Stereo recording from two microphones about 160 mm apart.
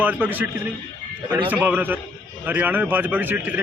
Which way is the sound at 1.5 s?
10° right (ahead or behind).